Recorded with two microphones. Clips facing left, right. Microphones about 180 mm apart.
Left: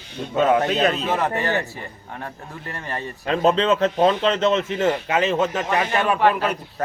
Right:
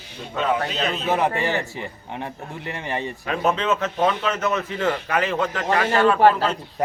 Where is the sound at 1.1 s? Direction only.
15° right (ahead or behind).